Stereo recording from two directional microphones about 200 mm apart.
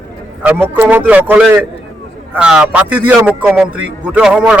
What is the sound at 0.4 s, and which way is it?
A man's voice, 10° right (ahead or behind).